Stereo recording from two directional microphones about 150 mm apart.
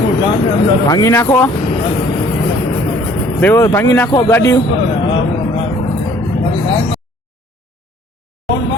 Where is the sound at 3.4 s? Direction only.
15° left (ahead or behind).